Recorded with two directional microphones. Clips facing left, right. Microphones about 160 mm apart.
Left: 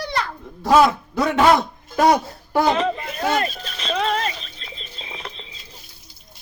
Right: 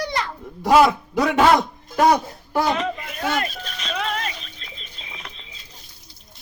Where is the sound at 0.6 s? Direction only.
10° right (ahead or behind).